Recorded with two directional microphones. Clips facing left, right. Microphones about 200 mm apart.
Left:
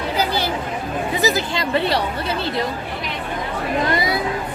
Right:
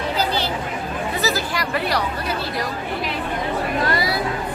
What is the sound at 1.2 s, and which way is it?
Speech, 20° left (ahead or behind).